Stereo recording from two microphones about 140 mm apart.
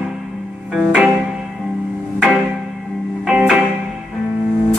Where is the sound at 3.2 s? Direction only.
5° right (ahead or behind).